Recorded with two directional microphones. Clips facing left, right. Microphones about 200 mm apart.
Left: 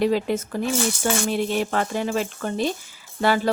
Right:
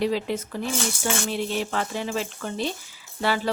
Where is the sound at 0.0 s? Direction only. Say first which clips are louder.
Left 4 dB; 50° left (ahead or behind).